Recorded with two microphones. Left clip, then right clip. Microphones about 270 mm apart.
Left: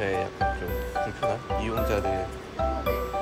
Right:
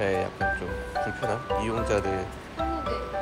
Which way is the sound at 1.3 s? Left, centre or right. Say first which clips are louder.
Right 1 dB; centre.